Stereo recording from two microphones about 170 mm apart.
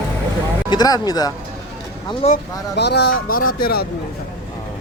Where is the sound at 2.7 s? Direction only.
75° left (ahead or behind); by 3.8 s 60° left (ahead or behind).